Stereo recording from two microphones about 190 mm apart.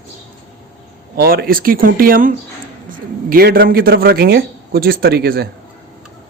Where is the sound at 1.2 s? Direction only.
55° right (ahead or behind).